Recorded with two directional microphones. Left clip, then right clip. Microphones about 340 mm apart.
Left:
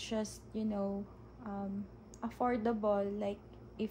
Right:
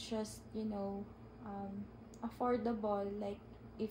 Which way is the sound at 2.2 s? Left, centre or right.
Left.